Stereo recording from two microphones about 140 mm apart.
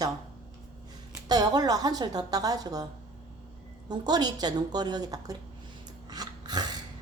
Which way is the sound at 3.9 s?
30° right (ahead or behind).